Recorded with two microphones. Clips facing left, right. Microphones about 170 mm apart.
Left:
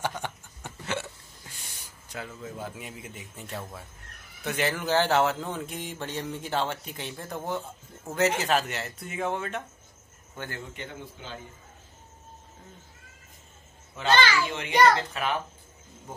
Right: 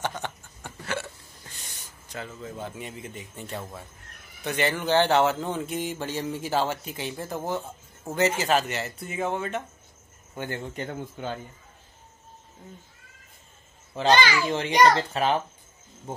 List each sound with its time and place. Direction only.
0.2 s hiccup: 15° left (ahead or behind)
2.1 s speech: 5° left (ahead or behind)
10.3 s speech: 15° right (ahead or behind)
10.7 s a man's voice: 45° right (ahead or behind)
14.1 s a child's voice: 15° right (ahead or behind)
14.5 s a child's voice: 35° right (ahead or behind)